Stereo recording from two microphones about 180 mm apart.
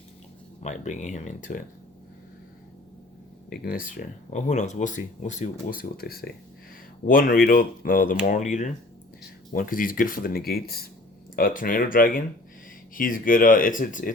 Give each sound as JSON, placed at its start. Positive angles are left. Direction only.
{"t": 0.6, "sound": "speech", "side_deg": 40}
{"t": 3.5, "sound": "speech", "side_deg": 55}